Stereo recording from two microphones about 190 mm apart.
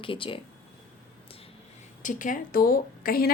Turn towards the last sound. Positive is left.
turn(degrees=50)  # may be behind; listen again after turning